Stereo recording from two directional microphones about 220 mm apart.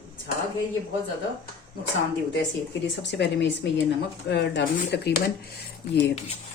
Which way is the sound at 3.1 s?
50° left (ahead or behind).